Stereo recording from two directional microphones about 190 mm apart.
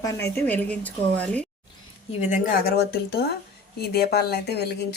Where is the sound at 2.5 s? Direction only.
55° left (ahead or behind).